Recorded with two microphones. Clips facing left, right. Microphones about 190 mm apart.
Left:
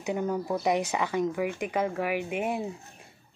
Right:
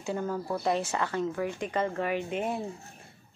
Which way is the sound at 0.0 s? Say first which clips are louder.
Left 3 dB; 15° left (ahead or behind).